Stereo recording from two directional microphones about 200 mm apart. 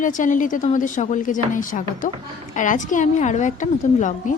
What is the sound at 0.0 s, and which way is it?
Speech, 40° left (ahead or behind).